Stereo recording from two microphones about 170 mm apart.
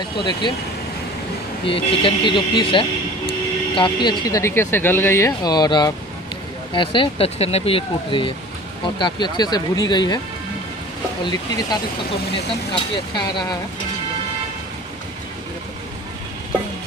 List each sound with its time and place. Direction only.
0.2 s speech: 25° left (ahead or behind)
1.7 s speech: 30° left (ahead or behind)